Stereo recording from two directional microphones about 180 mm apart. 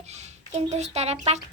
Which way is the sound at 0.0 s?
40° right (ahead or behind).